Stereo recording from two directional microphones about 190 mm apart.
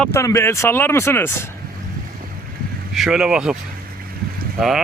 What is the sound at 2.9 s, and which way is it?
Speech, centre (ahead or behind).